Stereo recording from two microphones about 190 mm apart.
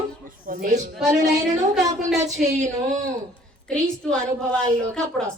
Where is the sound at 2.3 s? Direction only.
40° right (ahead or behind).